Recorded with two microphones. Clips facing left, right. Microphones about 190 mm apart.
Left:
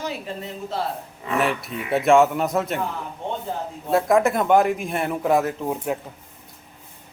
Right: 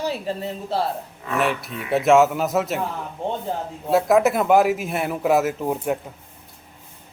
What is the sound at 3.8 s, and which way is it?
A man's voice, 5° right (ahead or behind).